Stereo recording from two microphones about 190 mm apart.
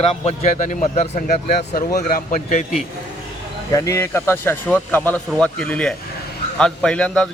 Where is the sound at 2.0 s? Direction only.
45° left (ahead or behind).